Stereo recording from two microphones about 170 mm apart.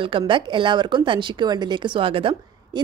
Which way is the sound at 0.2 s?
30° right (ahead or behind).